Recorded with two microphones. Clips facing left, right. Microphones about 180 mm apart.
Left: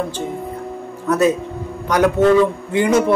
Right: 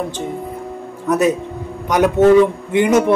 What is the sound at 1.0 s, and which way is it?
Speech, 15° right (ahead or behind).